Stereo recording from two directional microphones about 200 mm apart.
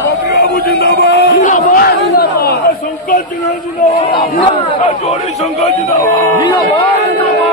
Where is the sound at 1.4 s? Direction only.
45° left (ahead or behind).